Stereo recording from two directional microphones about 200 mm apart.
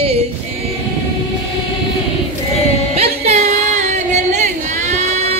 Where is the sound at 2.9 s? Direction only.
30° right (ahead or behind).